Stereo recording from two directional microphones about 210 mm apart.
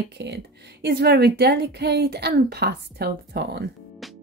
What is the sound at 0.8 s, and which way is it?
Speech, 50° right (ahead or behind).